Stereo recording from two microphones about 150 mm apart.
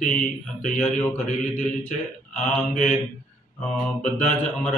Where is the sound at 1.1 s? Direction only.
45° left (ahead or behind).